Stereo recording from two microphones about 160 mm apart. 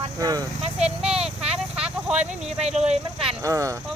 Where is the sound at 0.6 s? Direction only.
40° right (ahead or behind).